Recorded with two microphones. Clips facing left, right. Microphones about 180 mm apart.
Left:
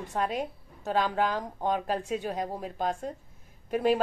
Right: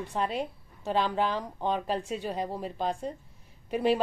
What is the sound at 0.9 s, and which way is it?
Speech, 5° left (ahead or behind).